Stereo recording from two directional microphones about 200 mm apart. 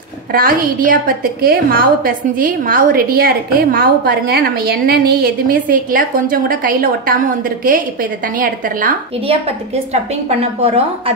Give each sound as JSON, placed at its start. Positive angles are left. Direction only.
{"t": 0.3, "sound": "a woman's voice", "side_deg": -45}
{"t": 9.2, "sound": "a woman's voice", "side_deg": -30}